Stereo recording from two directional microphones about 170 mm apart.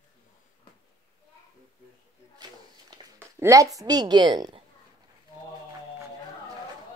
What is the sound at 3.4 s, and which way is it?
A woman's voice, 20° right (ahead or behind).